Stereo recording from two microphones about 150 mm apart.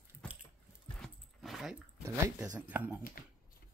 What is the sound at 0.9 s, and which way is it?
Dog, centre (ahead or behind).